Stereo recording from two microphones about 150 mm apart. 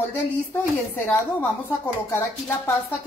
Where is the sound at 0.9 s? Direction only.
15° left (ahead or behind).